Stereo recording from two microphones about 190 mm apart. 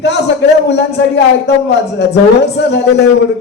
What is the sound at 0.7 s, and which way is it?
Speech, 65° left (ahead or behind).